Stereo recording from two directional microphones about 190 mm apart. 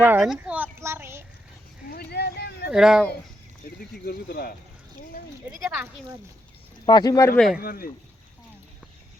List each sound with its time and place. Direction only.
0.0 s a sound: 5° right (ahead or behind)
1.9 s a sound: 55° left (ahead or behind)
2.6 s speech: 5° right (ahead or behind)
3.9 s speech: 50° left (ahead or behind)
6.8 s speech: 20° left (ahead or behind)
7.3 s speech: centre (ahead or behind)
7.6 s speech: 50° left (ahead or behind)